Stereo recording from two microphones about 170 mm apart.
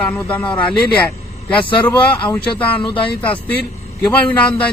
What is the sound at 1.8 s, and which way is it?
Speech, 15° left (ahead or behind).